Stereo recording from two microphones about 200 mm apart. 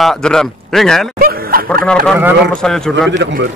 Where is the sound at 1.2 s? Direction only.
45° right (ahead or behind).